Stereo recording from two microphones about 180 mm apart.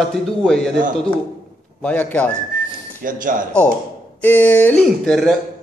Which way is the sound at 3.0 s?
50° right (ahead or behind).